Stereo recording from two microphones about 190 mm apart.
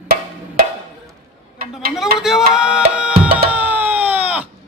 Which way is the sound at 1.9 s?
Centre (ahead or behind).